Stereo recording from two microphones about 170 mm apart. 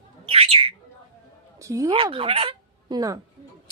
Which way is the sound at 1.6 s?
20° right (ahead or behind).